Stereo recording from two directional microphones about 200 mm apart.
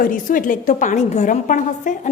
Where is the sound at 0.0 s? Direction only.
40° left (ahead or behind).